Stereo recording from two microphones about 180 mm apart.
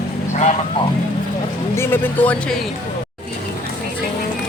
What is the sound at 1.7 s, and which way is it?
Speech, 15° left (ahead or behind).